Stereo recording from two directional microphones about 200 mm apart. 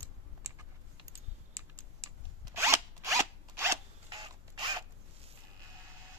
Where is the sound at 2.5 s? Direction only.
15° right (ahead or behind).